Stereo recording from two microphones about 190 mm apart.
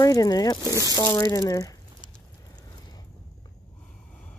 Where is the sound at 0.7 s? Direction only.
20° right (ahead or behind).